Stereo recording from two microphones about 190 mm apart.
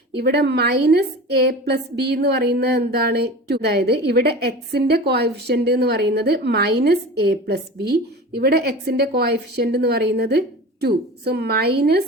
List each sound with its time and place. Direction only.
0.2 s a woman's voice: 60° right (ahead or behind)